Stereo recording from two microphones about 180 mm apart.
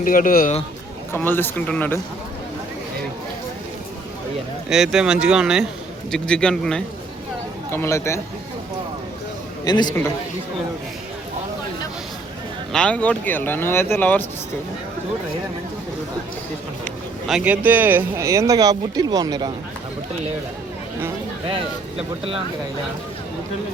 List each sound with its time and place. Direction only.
0.0 s speech: 50° left (ahead or behind)
1.1 s speech: 10° left (ahead or behind)
4.7 s speech: 5° right (ahead or behind)
7.7 s speech: 15° left (ahead or behind)
9.6 s a man's voice: 25° left (ahead or behind)
12.7 s speech: 5° left (ahead or behind)
17.2 s speech: 5° right (ahead or behind); by 19.5 s 20° right (ahead or behind)
21.5 s speech: 30° right (ahead or behind)